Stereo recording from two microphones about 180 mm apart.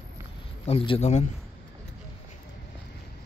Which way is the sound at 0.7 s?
30° left (ahead or behind).